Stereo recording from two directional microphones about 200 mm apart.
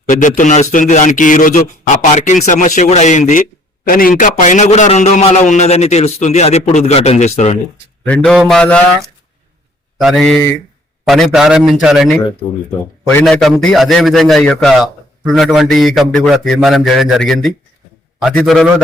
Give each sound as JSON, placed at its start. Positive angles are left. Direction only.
{"t": 0.1, "sound": "a man's voice", "side_deg": 40}
{"t": 8.0, "sound": "a man's voice", "side_deg": 5}
{"t": 10.0, "sound": "a man's voice", "side_deg": 0}